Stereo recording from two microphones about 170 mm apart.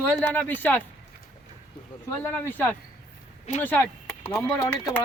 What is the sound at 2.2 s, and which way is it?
Speech, 10° left (ahead or behind).